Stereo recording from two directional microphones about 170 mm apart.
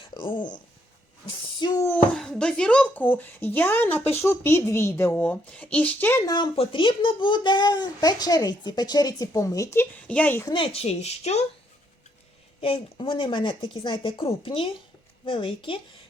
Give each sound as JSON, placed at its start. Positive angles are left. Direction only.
{"t": 0.1, "sound": "speech", "side_deg": 30}
{"t": 1.9, "sound": "speech", "side_deg": 5}
{"t": 10.5, "sound": "speech", "side_deg": 35}
{"t": 12.5, "sound": "speech", "side_deg": 35}